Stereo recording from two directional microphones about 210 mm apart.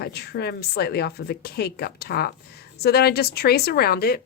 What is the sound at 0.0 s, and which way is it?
Speech, 50° left (ahead or behind).